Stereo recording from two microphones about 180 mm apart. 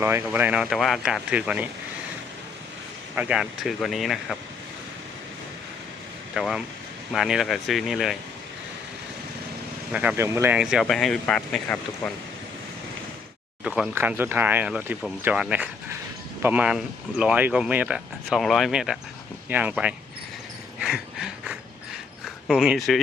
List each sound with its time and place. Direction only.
0.0 s speech: 15° right (ahead or behind)
3.2 s speech: 5° right (ahead or behind)
6.3 s speech: centre (ahead or behind)
9.9 s speech: 5° right (ahead or behind)
13.7 s speech: 5° right (ahead or behind)
20.7 s a sound: centre (ahead or behind)
22.4 s speech: centre (ahead or behind)